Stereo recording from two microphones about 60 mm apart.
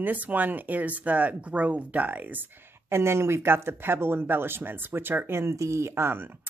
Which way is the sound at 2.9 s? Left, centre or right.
Right.